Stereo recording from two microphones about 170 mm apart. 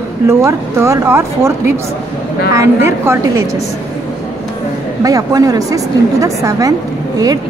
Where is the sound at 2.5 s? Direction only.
15° right (ahead or behind).